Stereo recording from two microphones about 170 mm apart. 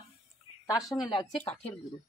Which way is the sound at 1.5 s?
40° left (ahead or behind).